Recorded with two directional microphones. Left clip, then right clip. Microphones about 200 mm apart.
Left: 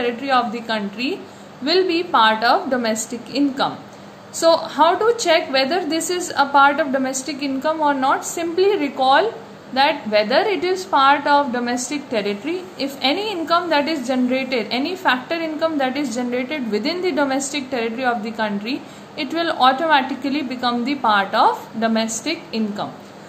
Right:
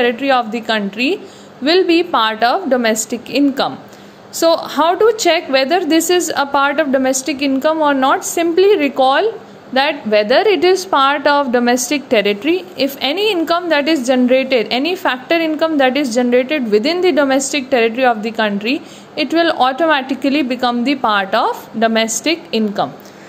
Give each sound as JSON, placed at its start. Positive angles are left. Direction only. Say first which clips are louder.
{"t": 0.0, "sound": "a woman's voice", "louder": "right 5 dB", "side_deg": -40}